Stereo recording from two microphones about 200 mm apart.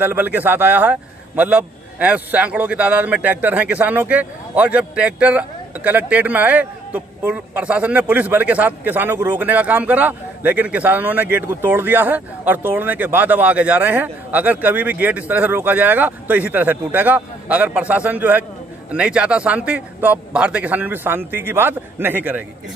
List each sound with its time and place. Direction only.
0.0 s a man's voice: 10° right (ahead or behind)